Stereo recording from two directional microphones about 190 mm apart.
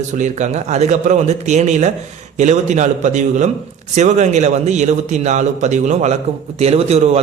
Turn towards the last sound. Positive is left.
turn(degrees=-35)  # may be behind; listen again after turning